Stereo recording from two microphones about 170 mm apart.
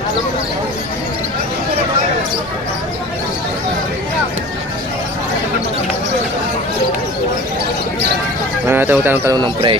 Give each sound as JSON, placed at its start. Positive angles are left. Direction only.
{"t": 8.6, "sound": "speech", "side_deg": -10}
{"t": 9.4, "sound": "speech", "side_deg": -30}